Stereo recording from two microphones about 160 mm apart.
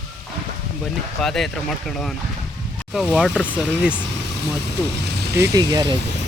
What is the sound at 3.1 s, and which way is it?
Speech, 5° right (ahead or behind).